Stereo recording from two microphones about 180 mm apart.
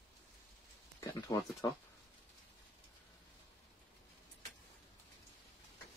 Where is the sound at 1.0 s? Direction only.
20° left (ahead or behind).